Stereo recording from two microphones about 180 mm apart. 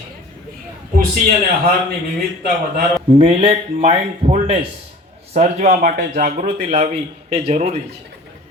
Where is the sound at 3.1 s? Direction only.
35° right (ahead or behind).